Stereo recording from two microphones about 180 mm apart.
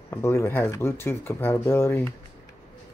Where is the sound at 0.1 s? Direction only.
15° left (ahead or behind).